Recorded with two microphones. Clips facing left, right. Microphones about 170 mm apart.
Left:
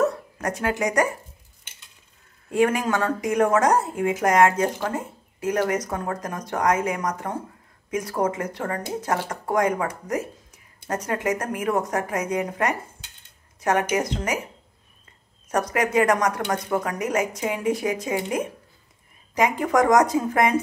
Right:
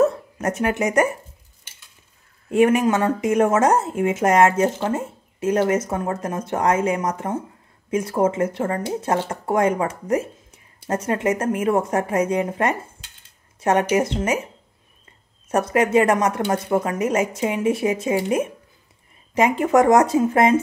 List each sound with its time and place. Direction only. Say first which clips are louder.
0.0 s dog: right 4 dB; 25° right (ahead or behind)
2.5 s speech: right 5 dB; 20° right (ahead or behind)
15.5 s speech: right 4 dB; 25° right (ahead or behind)